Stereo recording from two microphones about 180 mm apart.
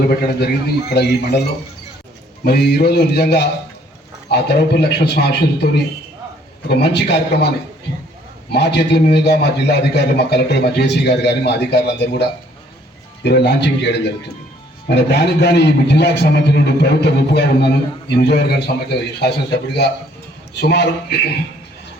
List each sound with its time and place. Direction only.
0.2 s a man's voice: 65° left (ahead or behind)